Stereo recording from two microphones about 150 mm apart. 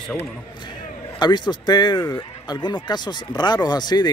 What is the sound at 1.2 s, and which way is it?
Speech, 30° left (ahead or behind).